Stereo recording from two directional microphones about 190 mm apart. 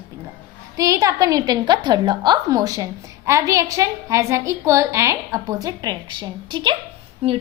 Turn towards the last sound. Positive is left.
turn(degrees=-30)  # may be behind; listen again after turning